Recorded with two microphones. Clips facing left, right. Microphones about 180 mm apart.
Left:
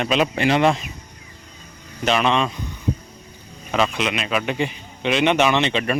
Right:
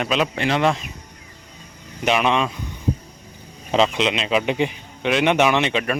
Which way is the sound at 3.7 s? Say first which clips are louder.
Right 3 dB; 25° right (ahead or behind).